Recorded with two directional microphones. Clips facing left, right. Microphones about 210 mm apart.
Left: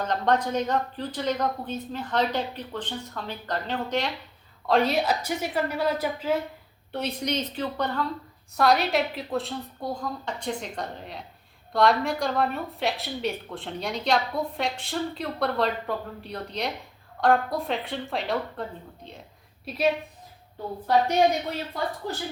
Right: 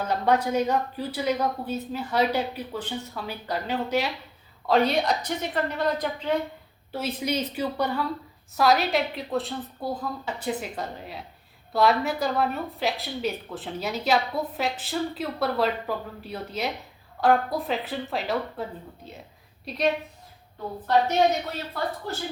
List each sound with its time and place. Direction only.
0.0 s a woman's voice: 10° right (ahead or behind)